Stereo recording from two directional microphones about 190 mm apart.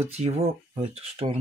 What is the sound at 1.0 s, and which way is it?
Speech, 30° right (ahead or behind).